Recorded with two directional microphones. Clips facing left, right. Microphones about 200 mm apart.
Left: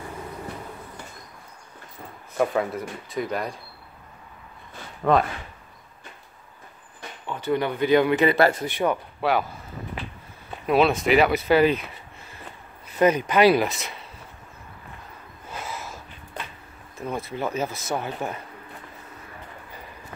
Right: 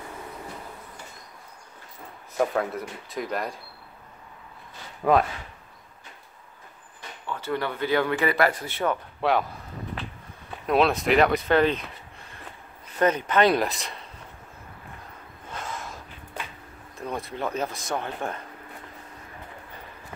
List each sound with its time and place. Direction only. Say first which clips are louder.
2.3 s speech: left 2 dB; centre (ahead or behind)
5.1 s speech: left 1 dB; 10° right (ahead or behind)
7.2 s speech: left 4 dB; 15° left (ahead or behind)
8.6 s speech: left 3 dB; 15° left (ahead or behind)
9.2 s speech: even; centre (ahead or behind)
10.7 s speech: left 2 dB; centre (ahead or behind)
15.4 s gasp: left 1 dB; 5° left (ahead or behind)
17.0 s speech: left 2 dB; centre (ahead or behind)